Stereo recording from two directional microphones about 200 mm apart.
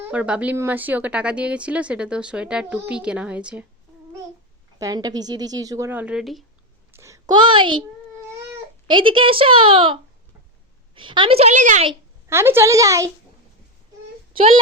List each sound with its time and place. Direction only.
0.0 s speech: 5° right (ahead or behind)
4.8 s speech: 20° right (ahead or behind); by 6.4 s centre (ahead or behind)
6.9 s a child's voice: 15° right (ahead or behind)
8.9 s a woman's voice: 25° right (ahead or behind)
12.3 s speech: 10° right (ahead or behind)
14.3 s a woman's voice: 25° right (ahead or behind)